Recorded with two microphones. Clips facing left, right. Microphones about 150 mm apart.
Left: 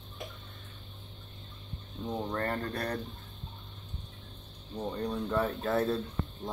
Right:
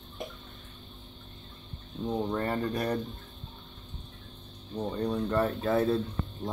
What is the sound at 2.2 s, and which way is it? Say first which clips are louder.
Speech: right 3 dB; 10° right (ahead or behind).